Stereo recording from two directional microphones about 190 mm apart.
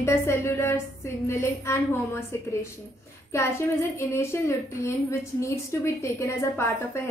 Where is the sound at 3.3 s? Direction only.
15° left (ahead or behind).